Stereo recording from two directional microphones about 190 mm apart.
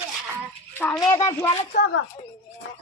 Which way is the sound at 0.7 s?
10° left (ahead or behind).